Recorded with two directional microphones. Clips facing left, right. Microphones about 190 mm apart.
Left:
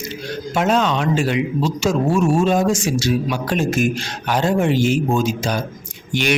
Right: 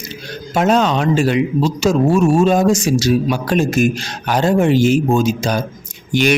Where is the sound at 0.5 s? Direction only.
40° right (ahead or behind).